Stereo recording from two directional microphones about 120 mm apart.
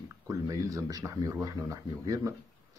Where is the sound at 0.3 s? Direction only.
25° right (ahead or behind).